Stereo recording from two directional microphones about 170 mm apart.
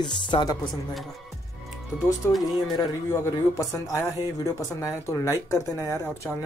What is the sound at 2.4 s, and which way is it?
Speech, 20° left (ahead or behind).